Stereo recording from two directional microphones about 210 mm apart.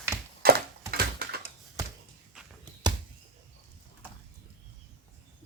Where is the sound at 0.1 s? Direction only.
15° right (ahead or behind).